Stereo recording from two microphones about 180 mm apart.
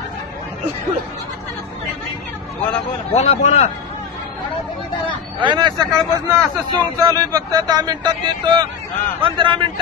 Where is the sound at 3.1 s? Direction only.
35° left (ahead or behind).